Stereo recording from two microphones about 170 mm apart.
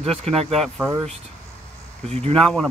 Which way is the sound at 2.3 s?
5° left (ahead or behind).